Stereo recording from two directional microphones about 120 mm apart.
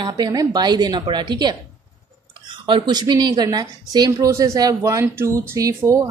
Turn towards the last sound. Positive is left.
turn(degrees=-25)  # may be behind; listen again after turning